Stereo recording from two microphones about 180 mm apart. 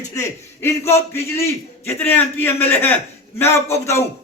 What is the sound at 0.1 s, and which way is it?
A man's voice, 15° left (ahead or behind).